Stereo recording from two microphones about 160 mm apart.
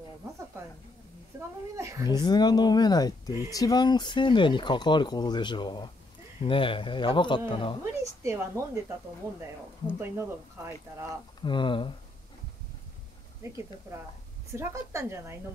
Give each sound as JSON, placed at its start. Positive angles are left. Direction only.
{"t": 1.3, "sound": "a sound", "side_deg": -15}
{"t": 1.8, "sound": "speech", "side_deg": -20}
{"t": 2.0, "sound": "a man's voice", "side_deg": 25}
{"t": 7.8, "sound": "speech", "side_deg": -20}
{"t": 11.4, "sound": "a man's voice", "side_deg": 30}
{"t": 14.5, "sound": "speech", "side_deg": -15}